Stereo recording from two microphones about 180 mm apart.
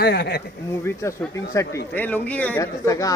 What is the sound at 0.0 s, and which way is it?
Speech, 60° left (ahead or behind).